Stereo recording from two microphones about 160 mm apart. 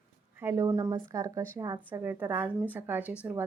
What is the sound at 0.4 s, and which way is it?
A woman's voice, 20° right (ahead or behind).